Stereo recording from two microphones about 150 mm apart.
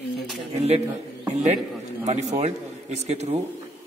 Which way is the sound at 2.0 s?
50° right (ahead or behind).